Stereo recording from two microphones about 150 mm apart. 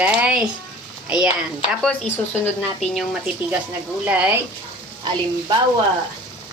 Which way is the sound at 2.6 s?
Centre (ahead or behind).